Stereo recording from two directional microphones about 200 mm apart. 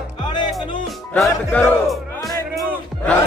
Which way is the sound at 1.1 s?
5° left (ahead or behind).